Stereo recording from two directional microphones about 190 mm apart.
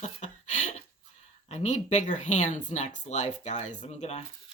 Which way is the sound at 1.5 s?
35° left (ahead or behind).